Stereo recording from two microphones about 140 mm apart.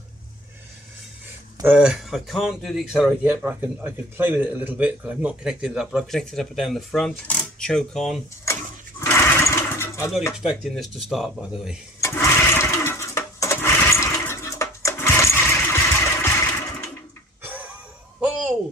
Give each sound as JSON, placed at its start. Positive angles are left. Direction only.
{"t": 1.6, "sound": "a man's voice", "side_deg": -10}
{"t": 3.3, "sound": "a man's voice", "side_deg": -10}
{"t": 9.0, "sound": "sewing machine", "side_deg": 15}
{"t": 10.3, "sound": "a man's voice", "side_deg": -5}
{"t": 12.0, "sound": "sewing machine", "side_deg": 20}
{"t": 17.4, "sound": "a sound", "side_deg": -10}